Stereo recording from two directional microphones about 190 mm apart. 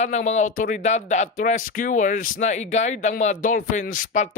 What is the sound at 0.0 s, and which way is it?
Speech, 35° left (ahead or behind).